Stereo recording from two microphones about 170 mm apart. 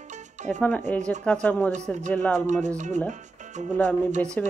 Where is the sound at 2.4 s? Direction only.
45° right (ahead or behind).